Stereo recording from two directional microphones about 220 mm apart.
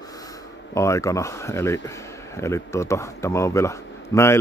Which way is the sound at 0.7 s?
15° left (ahead or behind).